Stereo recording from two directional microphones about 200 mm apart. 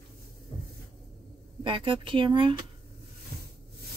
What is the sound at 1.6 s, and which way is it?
Speech, 25° right (ahead or behind).